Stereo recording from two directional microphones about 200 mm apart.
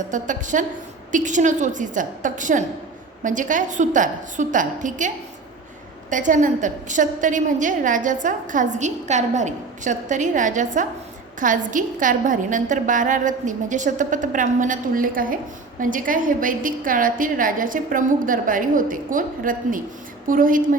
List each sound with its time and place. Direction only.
0.1 s a woman's voice: 40° right (ahead or behind)